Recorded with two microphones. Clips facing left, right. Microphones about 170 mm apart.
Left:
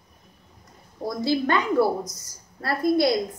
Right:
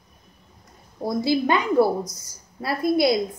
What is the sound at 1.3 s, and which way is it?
A woman's voice, 15° right (ahead or behind).